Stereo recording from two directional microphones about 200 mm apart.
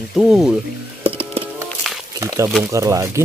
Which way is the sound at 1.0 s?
30° right (ahead or behind).